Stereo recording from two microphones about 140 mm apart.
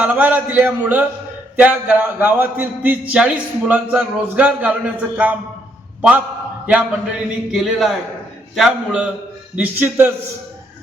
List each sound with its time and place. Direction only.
0.0 s a man's voice: 10° right (ahead or behind)